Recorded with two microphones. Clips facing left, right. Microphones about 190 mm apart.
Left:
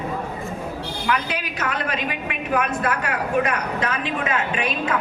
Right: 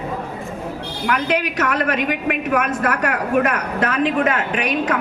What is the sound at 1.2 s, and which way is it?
A woman's voice, 70° right (ahead or behind).